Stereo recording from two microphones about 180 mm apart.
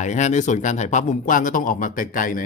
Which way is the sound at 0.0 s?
40° left (ahead or behind).